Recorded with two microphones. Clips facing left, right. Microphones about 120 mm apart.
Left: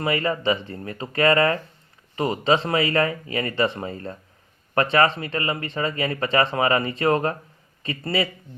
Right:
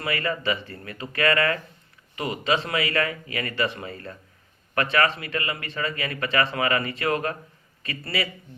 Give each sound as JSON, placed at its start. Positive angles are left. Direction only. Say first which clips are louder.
{"t": 0.0, "sound": "a man's voice", "louder": "left 4 dB", "side_deg": 25}